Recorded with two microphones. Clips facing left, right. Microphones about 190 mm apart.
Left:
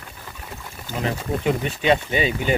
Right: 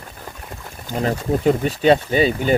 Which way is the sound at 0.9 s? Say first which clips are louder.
Right 5 dB; 40° right (ahead or behind).